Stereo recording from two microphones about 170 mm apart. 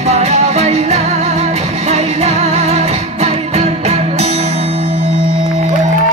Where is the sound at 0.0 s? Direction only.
40° right (ahead or behind).